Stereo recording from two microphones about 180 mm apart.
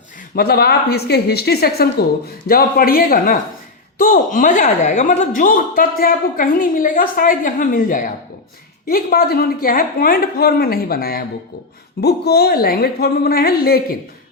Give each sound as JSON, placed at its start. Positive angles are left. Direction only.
{"t": 0.3, "sound": "speech", "side_deg": 60}